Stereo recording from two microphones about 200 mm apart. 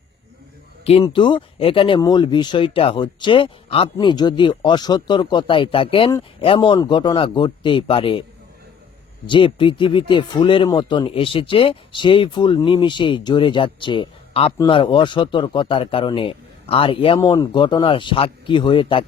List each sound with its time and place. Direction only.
1.0 s speech: 25° left (ahead or behind)
9.2 s speech: 25° left (ahead or behind)
17.2 s speech: 15° left (ahead or behind)